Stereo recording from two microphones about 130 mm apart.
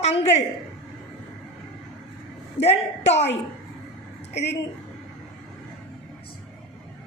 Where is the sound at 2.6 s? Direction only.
60° left (ahead or behind).